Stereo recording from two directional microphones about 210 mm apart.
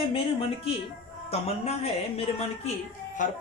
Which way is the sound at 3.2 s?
40° left (ahead or behind).